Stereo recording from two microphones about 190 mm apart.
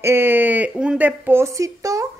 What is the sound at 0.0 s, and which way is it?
A woman's voice, 10° right (ahead or behind).